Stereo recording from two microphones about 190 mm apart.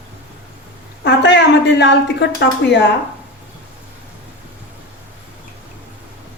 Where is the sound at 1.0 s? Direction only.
65° left (ahead or behind).